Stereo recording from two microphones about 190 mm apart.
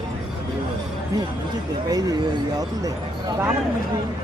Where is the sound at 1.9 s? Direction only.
20° right (ahead or behind).